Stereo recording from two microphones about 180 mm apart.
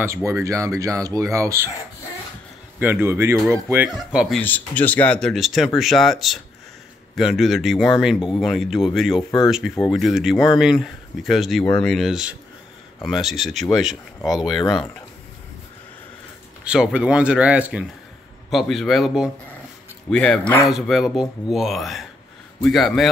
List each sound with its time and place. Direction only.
0.0 s speech: 15° right (ahead or behind)
2.8 s speech: 10° right (ahead or behind)
4.4 s speech: 10° left (ahead or behind)
10.3 s speech: 25° left (ahead or behind)
10.6 s speech: centre (ahead or behind)
16.6 s speech: 5° right (ahead or behind)